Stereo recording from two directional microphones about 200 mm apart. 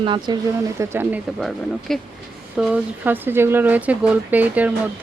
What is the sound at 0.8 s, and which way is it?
Speech, 10° right (ahead or behind).